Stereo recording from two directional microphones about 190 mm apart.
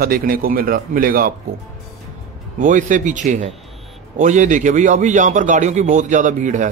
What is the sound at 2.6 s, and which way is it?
A man's voice, 45° right (ahead or behind).